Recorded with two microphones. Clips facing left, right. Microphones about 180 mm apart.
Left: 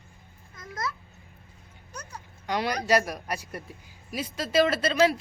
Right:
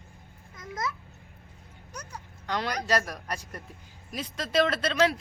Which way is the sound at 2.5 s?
10° left (ahead or behind).